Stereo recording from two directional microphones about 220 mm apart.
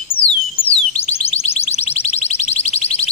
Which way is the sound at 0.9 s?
30° left (ahead or behind).